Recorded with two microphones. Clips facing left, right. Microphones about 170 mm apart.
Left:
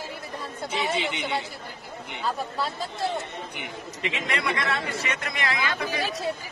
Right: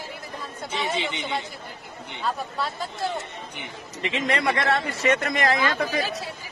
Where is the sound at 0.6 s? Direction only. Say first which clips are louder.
Even; 5° left (ahead or behind).